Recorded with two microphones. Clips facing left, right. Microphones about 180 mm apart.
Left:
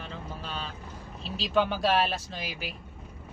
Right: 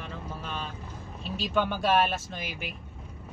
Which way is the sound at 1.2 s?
30° left (ahead or behind).